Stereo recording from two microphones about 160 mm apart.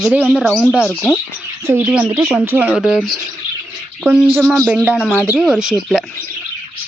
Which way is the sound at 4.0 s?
10° right (ahead or behind).